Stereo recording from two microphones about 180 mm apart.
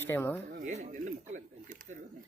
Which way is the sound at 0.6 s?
45° right (ahead or behind).